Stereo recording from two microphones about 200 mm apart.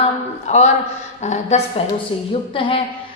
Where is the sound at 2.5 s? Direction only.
25° left (ahead or behind).